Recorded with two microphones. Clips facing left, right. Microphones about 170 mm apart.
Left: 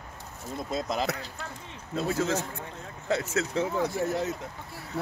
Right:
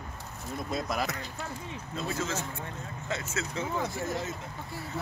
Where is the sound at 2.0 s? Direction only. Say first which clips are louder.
Left 6 dB; 65° left (ahead or behind).